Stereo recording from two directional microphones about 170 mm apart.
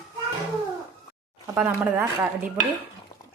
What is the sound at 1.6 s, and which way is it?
Speech, 10° right (ahead or behind).